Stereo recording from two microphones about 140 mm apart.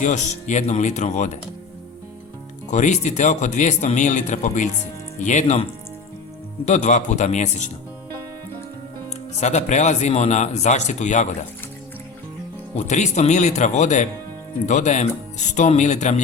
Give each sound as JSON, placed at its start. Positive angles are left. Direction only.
{"t": 0.0, "sound": "speech", "side_deg": 60}
{"t": 2.6, "sound": "speech", "side_deg": 60}
{"t": 6.7, "sound": "speech", "side_deg": 55}
{"t": 9.4, "sound": "speech", "side_deg": 55}
{"t": 12.7, "sound": "speech", "side_deg": 55}